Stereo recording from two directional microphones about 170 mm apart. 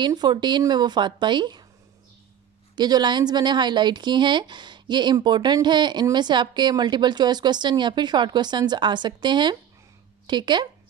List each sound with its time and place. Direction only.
0.0 s speech: 25° right (ahead or behind)
2.7 s speech: 25° right (ahead or behind)